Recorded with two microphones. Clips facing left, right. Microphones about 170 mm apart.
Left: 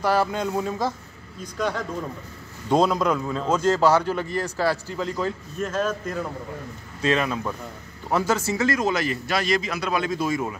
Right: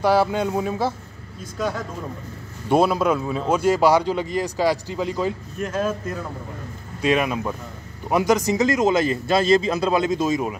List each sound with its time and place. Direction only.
0.0 s speech: 10° right (ahead or behind)
7.0 s a man's voice: 15° right (ahead or behind)